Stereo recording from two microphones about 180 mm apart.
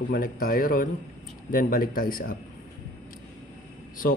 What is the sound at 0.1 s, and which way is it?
A man's voice, 55° left (ahead or behind).